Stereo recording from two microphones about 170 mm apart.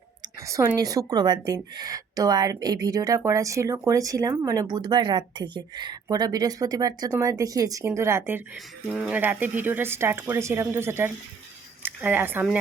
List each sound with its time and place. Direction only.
0.2 s speech: 20° right (ahead or behind)
8.5 s speech: centre (ahead or behind)
9.1 s speech: 10° right (ahead or behind)